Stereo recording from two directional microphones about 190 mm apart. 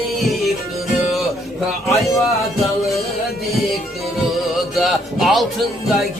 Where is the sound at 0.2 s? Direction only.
Centre (ahead or behind).